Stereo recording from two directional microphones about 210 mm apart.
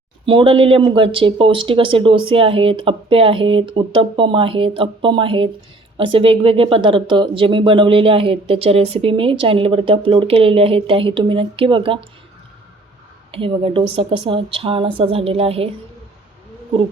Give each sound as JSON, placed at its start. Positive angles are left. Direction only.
{"t": 0.3, "sound": "speech", "side_deg": -25}
{"t": 13.3, "sound": "speech", "side_deg": -25}